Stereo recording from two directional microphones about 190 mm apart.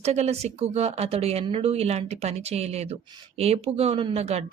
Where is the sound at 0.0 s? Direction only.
35° right (ahead or behind).